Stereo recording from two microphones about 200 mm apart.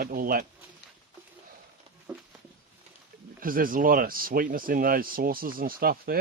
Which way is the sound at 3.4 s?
45° right (ahead or behind).